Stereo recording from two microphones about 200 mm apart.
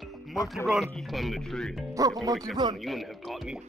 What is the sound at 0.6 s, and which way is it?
Speech, centre (ahead or behind).